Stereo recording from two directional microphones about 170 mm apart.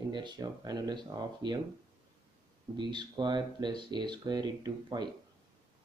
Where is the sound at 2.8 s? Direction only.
25° right (ahead or behind).